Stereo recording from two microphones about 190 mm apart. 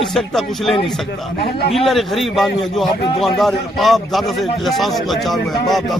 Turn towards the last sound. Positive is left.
turn(degrees=0)  # may be behind; listen again after turning